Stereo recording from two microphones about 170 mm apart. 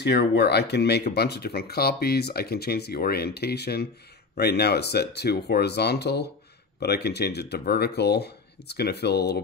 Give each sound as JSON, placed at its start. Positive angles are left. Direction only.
{"t": 0.0, "sound": "speech", "side_deg": 80}